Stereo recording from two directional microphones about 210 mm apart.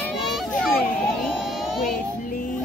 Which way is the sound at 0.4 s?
5° left (ahead or behind).